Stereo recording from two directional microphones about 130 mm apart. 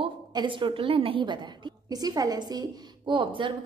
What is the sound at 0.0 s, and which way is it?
A woman's voice, 35° right (ahead or behind).